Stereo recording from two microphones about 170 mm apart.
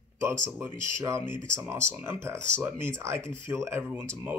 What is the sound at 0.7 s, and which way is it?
Speech, 15° right (ahead or behind).